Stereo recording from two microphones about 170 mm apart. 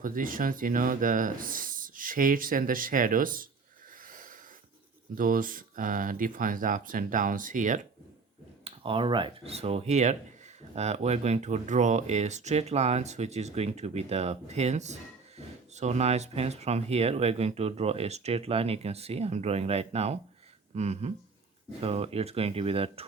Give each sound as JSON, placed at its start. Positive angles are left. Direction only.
{"t": 0.0, "sound": "speech", "side_deg": -55}
{"t": 4.0, "sound": "a sound", "side_deg": -55}
{"t": 5.1, "sound": "speech", "side_deg": -55}
{"t": 8.6, "sound": "speech", "side_deg": -30}